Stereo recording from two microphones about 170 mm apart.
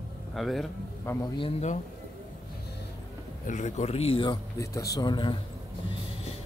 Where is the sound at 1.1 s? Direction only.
15° left (ahead or behind).